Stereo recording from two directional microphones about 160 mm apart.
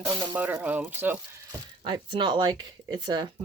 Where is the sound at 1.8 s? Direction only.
30° right (ahead or behind).